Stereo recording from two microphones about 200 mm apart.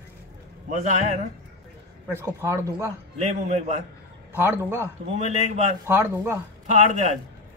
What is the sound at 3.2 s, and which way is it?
Speech, 30° right (ahead or behind).